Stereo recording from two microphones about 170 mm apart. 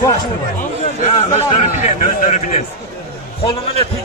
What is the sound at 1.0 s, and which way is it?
A man's voice, 45° left (ahead or behind).